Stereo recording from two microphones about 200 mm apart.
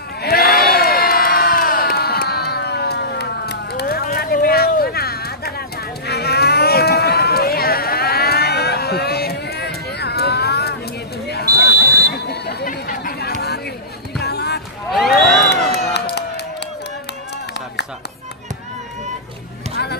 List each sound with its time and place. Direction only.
0.2 s crowd: 50° left (ahead or behind)
6.0 s livestock: 55° left (ahead or behind)
11.2 s a sound: 55° left (ahead or behind)
14.2 s music: 55° left (ahead or behind)
15.5 s crowd: 55° left (ahead or behind)